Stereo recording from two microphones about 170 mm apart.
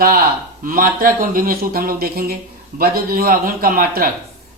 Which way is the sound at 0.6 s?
55° right (ahead or behind).